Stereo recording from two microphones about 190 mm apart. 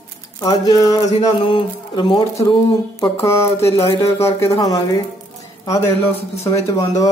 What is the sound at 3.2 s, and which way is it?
A man's voice, 15° left (ahead or behind).